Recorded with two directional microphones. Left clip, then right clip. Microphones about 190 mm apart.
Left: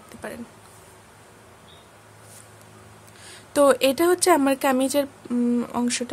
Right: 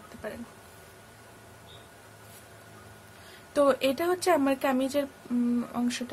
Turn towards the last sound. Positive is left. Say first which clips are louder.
# left 6 dB
turn(degrees=55)  # may be behind; listen again after turning